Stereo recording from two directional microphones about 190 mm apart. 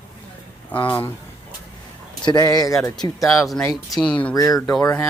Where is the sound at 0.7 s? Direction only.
10° left (ahead or behind).